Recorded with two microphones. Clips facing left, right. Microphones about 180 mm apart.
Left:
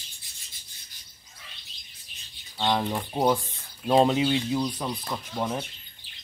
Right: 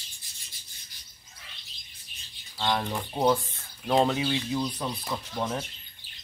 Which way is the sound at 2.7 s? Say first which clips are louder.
Left 3 dB; 10° left (ahead or behind).